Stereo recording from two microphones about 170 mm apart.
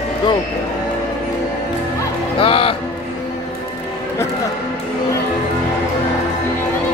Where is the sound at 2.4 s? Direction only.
35° left (ahead or behind).